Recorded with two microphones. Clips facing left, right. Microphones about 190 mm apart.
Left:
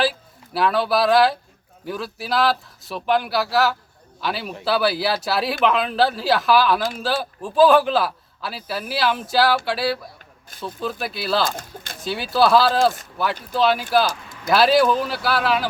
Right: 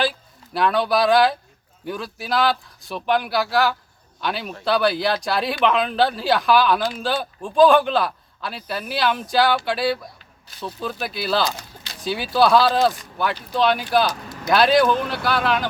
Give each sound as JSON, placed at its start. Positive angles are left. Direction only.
{"t": 0.0, "sound": "a man's voice", "side_deg": 5}
{"t": 11.5, "sound": "speech", "side_deg": 50}
{"t": 11.9, "sound": "a man's voice", "side_deg": 0}